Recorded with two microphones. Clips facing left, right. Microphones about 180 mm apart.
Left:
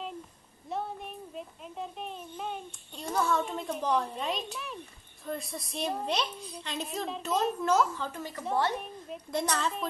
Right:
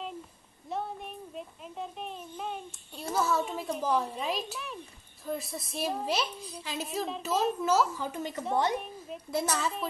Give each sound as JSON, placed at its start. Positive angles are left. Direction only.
{"t": 0.7, "sound": "a woman's voice", "side_deg": 0}
{"t": 8.7, "sound": "a woman's voice", "side_deg": 0}